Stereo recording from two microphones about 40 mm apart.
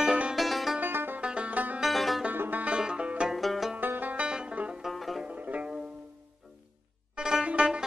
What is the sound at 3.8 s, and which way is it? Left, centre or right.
Music, right.